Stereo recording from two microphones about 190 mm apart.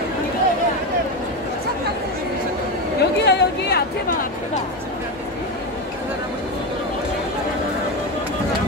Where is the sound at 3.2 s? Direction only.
60° left (ahead or behind).